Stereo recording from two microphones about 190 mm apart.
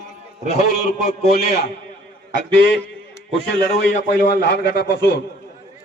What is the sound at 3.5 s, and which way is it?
A man's voice, 75° left (ahead or behind).